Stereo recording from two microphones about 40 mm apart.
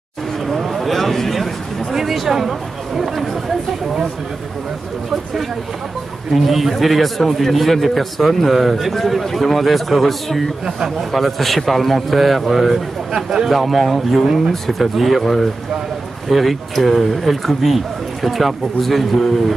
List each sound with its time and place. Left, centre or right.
0.5 s a sound: centre
2.0 s a man's voice: centre
6.3 s a man's voice: centre
10.6 s a man's voice: centre
11.1 s a man's voice: centre
13.1 s a man's voice: centre
13.5 s a man's voice: centre